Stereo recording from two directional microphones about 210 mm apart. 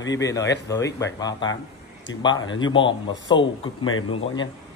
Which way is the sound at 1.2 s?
20° left (ahead or behind).